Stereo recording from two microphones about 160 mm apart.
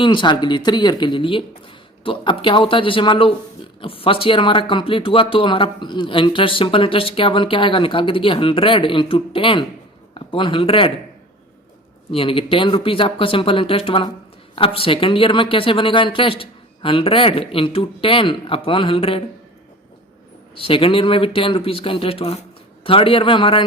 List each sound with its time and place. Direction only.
0.0 s speech: 30° left (ahead or behind)
12.1 s speech: 35° left (ahead or behind)
20.6 s speech: 35° left (ahead or behind)